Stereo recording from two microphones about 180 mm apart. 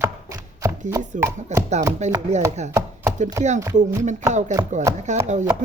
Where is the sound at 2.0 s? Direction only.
40° right (ahead or behind).